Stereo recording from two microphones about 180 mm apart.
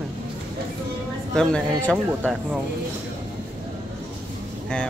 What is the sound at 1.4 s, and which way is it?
Speech, 5° left (ahead or behind).